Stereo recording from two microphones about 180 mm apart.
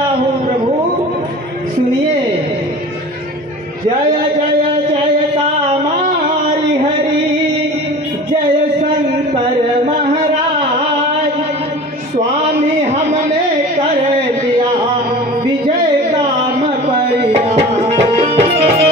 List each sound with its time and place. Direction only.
16.8 s tabla: 35° right (ahead or behind)